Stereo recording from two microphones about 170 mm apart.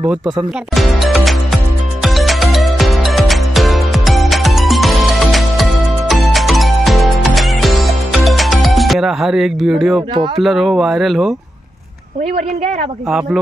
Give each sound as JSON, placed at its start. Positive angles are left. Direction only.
{"t": 0.7, "sound": "music", "side_deg": 0}
{"t": 10.1, "sound": "speech", "side_deg": -30}
{"t": 10.4, "sound": "speech", "side_deg": 0}